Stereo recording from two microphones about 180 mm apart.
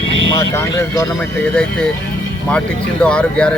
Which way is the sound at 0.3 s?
20° left (ahead or behind).